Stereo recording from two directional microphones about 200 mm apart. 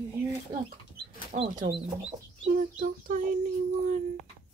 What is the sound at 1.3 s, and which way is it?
Speech, 35° right (ahead or behind).